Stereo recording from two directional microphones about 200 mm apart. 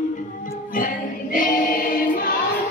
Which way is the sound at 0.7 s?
45° left (ahead or behind).